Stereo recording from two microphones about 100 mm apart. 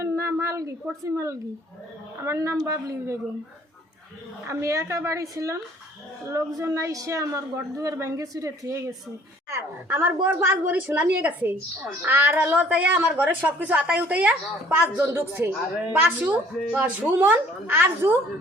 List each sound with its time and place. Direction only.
0.0 s a sound: 30° right (ahead or behind)
2.2 s a woman's voice: 30° right (ahead or behind)
4.4 s a woman's voice: 30° right (ahead or behind)